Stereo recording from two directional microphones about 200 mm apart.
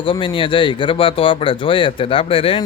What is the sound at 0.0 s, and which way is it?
Speech, 25° left (ahead or behind).